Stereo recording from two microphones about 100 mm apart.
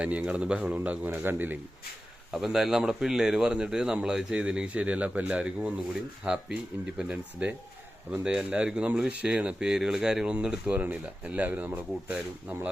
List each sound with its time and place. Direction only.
0.0 s speech: 15° right (ahead or behind)
2.3 s speech: 5° right (ahead or behind)